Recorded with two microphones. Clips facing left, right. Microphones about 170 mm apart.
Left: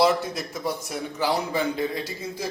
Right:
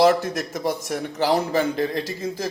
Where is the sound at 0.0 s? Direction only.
45° right (ahead or behind).